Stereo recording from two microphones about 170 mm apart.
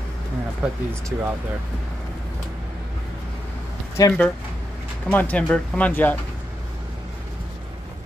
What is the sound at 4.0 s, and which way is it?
Speech, 20° left (ahead or behind).